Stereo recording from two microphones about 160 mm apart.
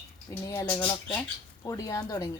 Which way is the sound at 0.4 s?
20° left (ahead or behind).